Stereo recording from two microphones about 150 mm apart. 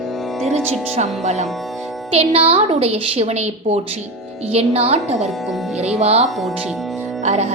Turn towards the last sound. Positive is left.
turn(degrees=-45)  # may be behind; listen again after turning